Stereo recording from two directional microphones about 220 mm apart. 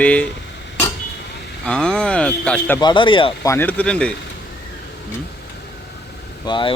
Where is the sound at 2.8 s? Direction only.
20° left (ahead or behind).